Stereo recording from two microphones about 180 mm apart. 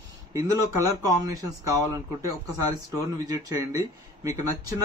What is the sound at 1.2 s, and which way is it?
Speech, 20° right (ahead or behind).